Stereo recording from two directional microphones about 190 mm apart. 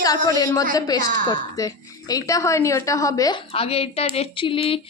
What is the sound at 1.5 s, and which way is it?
Speech, 20° left (ahead or behind).